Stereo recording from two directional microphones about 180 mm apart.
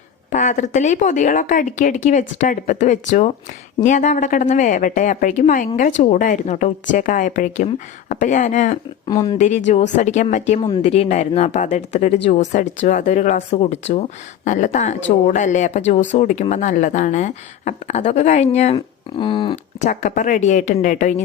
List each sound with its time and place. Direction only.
0.3 s a woman's voice: 45° left (ahead or behind)
9.0 s speech: 25° left (ahead or behind)
9.4 s a woman's voice: 40° left (ahead or behind)
19.8 s a woman's voice: 45° left (ahead or behind)